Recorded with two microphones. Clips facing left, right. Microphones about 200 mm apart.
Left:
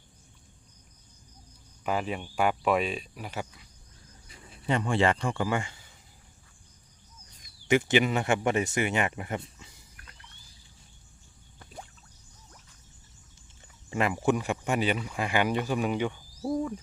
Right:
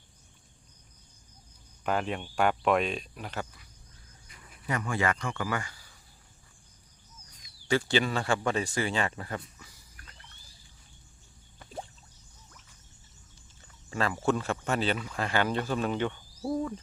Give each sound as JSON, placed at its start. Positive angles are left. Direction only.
{"t": 1.8, "sound": "speech", "side_deg": 5}
{"t": 4.3, "sound": "speech", "side_deg": 30}
{"t": 7.7, "sound": "speech", "side_deg": 20}
{"t": 13.9, "sound": "speech", "side_deg": 20}
{"t": 16.5, "sound": "owl", "side_deg": 5}